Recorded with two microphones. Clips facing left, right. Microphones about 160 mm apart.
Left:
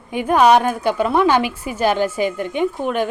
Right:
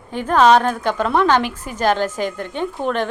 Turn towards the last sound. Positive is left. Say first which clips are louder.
# left 2 dB
turn(degrees=10)  # may be behind; listen again after turning